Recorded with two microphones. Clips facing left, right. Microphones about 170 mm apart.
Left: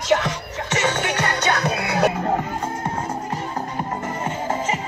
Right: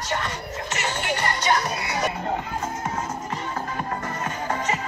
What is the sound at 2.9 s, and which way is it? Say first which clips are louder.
Music: left 3 dB; 35° left (ahead or behind).